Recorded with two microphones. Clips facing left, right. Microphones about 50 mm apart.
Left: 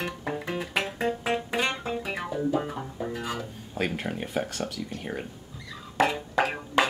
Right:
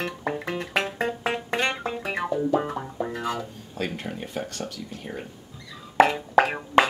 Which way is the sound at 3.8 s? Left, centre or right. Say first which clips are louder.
Left 1 dB; centre.